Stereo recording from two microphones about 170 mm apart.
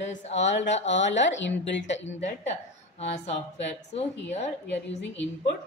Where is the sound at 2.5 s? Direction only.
40° left (ahead or behind).